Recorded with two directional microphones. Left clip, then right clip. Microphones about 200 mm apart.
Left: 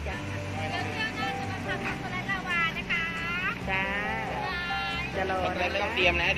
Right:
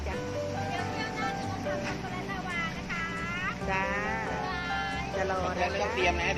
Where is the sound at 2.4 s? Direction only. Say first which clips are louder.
Left 7 dB; centre (ahead or behind).